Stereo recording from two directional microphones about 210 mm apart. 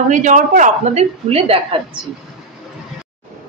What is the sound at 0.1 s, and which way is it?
Speech, 35° right (ahead or behind).